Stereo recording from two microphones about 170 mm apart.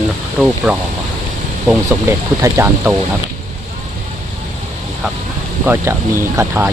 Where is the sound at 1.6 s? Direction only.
15° right (ahead or behind).